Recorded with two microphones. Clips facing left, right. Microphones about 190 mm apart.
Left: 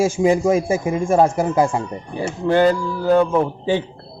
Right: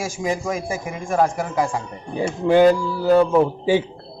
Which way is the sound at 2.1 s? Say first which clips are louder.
Right 2 dB; 15° right (ahead or behind).